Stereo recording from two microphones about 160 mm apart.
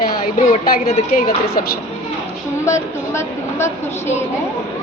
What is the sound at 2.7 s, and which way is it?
A woman's voice, 15° left (ahead or behind).